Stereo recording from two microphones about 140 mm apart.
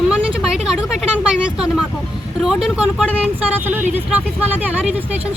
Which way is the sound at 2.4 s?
Centre (ahead or behind).